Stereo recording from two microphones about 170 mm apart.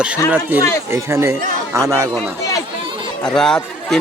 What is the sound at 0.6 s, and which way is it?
Speech, 20° left (ahead or behind).